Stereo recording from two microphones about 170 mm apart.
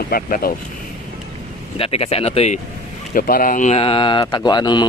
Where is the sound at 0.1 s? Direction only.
60° left (ahead or behind).